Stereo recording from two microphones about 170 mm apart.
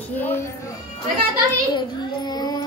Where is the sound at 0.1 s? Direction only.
10° left (ahead or behind).